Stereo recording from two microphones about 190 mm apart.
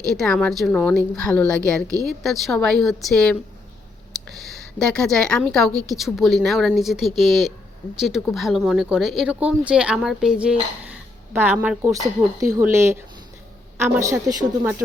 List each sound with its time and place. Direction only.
0.0 s a woman's voice: centre (ahead or behind)
11.8 s speech: 15° right (ahead or behind)